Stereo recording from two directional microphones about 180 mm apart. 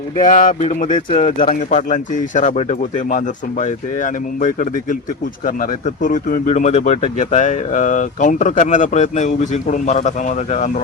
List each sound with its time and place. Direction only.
0.3 s speech: 45° left (ahead or behind)